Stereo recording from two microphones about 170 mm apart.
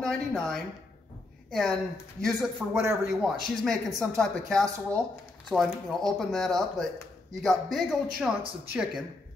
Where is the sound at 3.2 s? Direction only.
Centre (ahead or behind).